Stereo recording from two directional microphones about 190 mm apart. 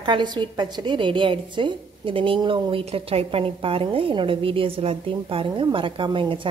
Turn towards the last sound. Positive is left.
turn(degrees=-25)  # may be behind; listen again after turning